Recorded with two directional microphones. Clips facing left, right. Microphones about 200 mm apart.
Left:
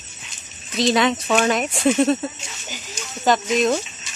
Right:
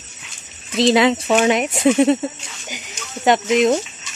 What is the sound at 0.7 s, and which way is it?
Speech, 25° right (ahead or behind).